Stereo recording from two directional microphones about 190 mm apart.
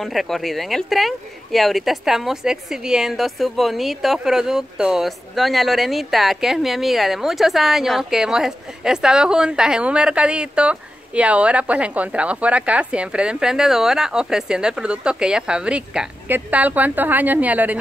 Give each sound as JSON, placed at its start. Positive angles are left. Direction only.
{"t": 0.0, "sound": "speech", "side_deg": 0}